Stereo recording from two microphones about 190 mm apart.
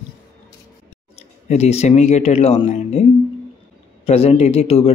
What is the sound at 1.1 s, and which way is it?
Speech, 35° left (ahead or behind).